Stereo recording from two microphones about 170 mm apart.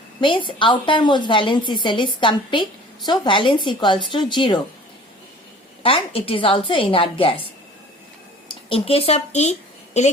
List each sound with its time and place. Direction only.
0.2 s a woman's voice: 30° left (ahead or behind)
5.8 s a woman's voice: 35° left (ahead or behind)
8.4 s speech: 35° left (ahead or behind)